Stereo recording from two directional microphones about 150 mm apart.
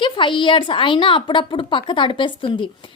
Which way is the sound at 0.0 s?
35° left (ahead or behind).